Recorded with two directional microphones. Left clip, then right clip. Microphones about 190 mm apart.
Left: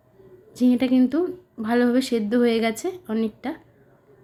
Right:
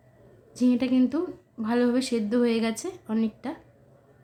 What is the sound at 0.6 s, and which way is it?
A woman's voice, 15° left (ahead or behind).